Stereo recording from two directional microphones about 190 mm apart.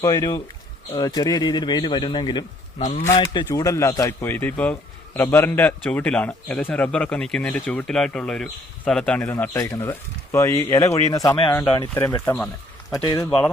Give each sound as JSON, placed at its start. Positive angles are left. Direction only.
{"t": 0.0, "sound": "a man's voice", "side_deg": 15}
{"t": 11.9, "sound": "a man's voice", "side_deg": 10}
{"t": 13.0, "sound": "speech", "side_deg": 25}